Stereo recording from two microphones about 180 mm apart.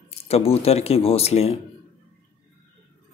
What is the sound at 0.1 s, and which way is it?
Speech, 35° left (ahead or behind).